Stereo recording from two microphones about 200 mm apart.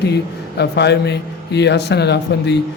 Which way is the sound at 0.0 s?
55° left (ahead or behind).